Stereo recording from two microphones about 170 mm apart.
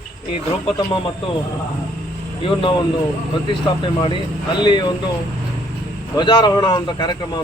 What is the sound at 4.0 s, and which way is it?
Speech, 30° left (ahead or behind).